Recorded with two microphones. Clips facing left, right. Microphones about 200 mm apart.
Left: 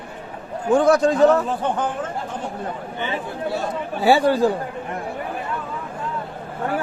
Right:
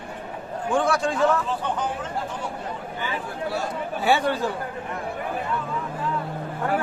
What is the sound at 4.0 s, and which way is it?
Speech, 35° left (ahead or behind).